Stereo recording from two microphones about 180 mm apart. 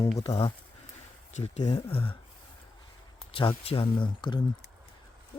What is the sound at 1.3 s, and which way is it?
Speech, 40° left (ahead or behind).